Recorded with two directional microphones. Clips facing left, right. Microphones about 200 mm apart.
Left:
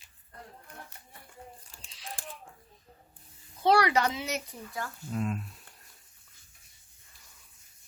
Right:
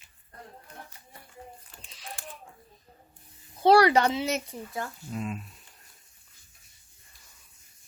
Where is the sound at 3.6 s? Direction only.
35° right (ahead or behind).